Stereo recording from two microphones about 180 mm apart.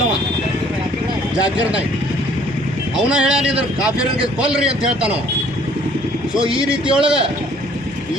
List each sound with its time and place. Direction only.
3.1 s speech: 5° right (ahead or behind)
6.3 s speech: 30° right (ahead or behind)
6.9 s speech: 5° right (ahead or behind)